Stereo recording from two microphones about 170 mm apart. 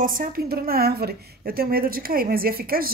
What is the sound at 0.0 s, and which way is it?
A woman's voice, 55° right (ahead or behind).